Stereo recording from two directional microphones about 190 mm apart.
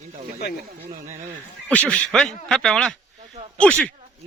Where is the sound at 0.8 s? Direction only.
35° right (ahead or behind).